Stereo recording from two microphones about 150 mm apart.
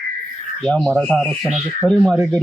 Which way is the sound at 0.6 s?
5° left (ahead or behind).